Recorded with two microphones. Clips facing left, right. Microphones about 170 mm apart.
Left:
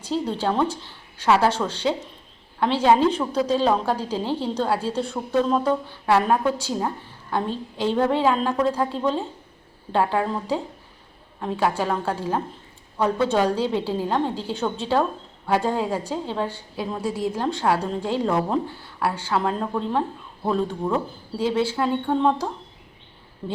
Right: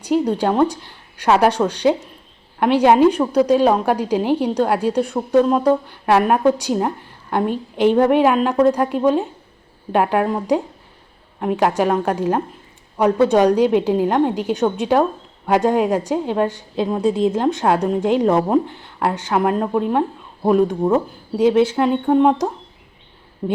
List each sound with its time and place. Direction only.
0.0 s a woman's voice: 15° right (ahead or behind)
23.4 s speech: 35° right (ahead or behind)